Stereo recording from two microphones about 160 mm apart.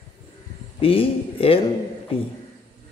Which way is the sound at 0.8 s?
35° left (ahead or behind).